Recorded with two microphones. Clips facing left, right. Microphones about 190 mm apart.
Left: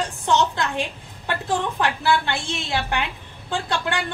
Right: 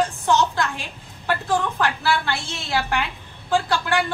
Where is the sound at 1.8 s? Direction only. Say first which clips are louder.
Left 1 dB; 20° left (ahead or behind).